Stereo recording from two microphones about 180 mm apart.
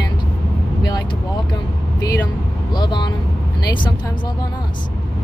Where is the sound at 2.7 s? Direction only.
25° left (ahead or behind).